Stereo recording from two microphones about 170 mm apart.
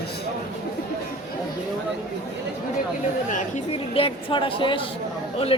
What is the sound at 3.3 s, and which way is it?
Speech, 35° left (ahead or behind).